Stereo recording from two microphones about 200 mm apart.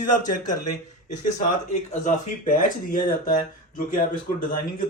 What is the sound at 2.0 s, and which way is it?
Speech, 40° left (ahead or behind).